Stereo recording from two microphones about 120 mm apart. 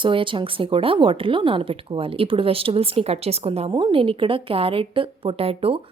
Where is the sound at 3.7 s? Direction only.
40° right (ahead or behind).